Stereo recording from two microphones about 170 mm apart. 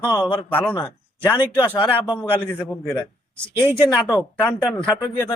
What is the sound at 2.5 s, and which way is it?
Speech, 10° left (ahead or behind).